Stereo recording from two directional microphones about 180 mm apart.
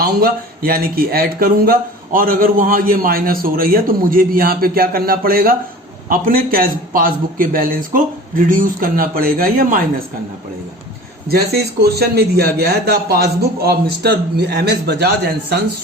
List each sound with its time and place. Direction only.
0.0 s a man's voice: 55° right (ahead or behind)
11.3 s speech: 60° right (ahead or behind)